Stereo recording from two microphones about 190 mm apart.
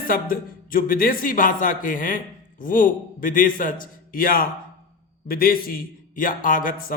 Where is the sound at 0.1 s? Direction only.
50° left (ahead or behind).